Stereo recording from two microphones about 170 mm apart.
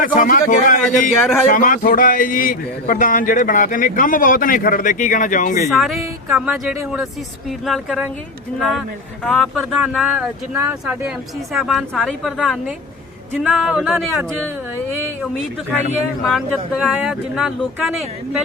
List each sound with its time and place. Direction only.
0.0 s speech: 55° left (ahead or behind)
5.7 s speech: centre (ahead or behind)
9.2 s speech: centre (ahead or behind)
11.5 s speech: centre (ahead or behind)
16.2 s speech: centre (ahead or behind)